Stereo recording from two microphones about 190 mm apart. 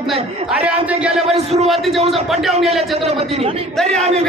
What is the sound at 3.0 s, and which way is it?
Speech, 30° right (ahead or behind).